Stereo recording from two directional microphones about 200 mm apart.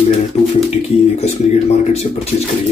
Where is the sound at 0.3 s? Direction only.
35° left (ahead or behind).